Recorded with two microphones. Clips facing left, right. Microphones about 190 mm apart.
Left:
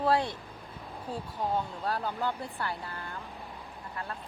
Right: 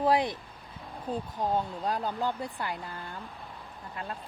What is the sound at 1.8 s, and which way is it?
Speech, 20° right (ahead or behind).